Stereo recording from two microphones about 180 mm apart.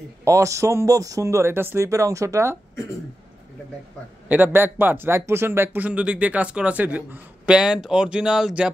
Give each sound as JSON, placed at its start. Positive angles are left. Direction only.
{"t": 0.2, "sound": "speech", "side_deg": -15}
{"t": 4.3, "sound": "speech", "side_deg": -10}